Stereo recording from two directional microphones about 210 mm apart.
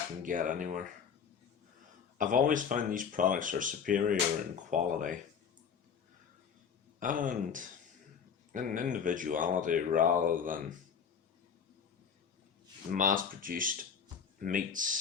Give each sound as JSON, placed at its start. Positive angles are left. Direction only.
{"t": 0.2, "sound": "speech", "side_deg": -40}
{"t": 2.1, "sound": "speech", "side_deg": -40}
{"t": 7.0, "sound": "speech", "side_deg": -40}
{"t": 12.9, "sound": "speech", "side_deg": -40}